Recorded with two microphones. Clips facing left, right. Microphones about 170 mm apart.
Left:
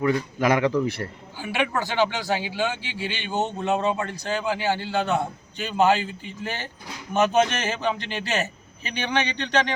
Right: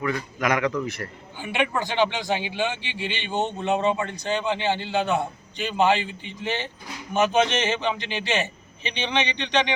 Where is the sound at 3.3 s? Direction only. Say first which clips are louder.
Even; 5° left (ahead or behind).